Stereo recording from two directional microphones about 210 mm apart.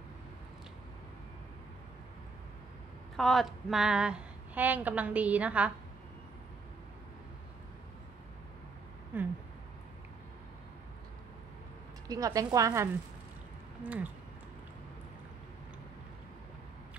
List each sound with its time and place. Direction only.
3.2 s a woman's voice: centre (ahead or behind)
9.1 s speech: 10° right (ahead or behind)
12.1 s a woman's voice: 15° right (ahead or behind)